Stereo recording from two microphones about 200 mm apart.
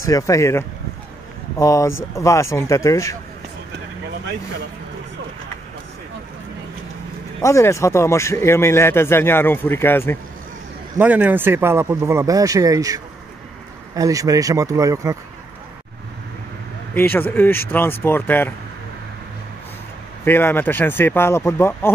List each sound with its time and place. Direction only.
0.0 s speech: 15° left (ahead or behind)
7.4 s speech: 15° left (ahead or behind)
11.0 s speech: 10° right (ahead or behind)
16.9 s speech: 10° left (ahead or behind)
20.2 s speech: 10° left (ahead or behind)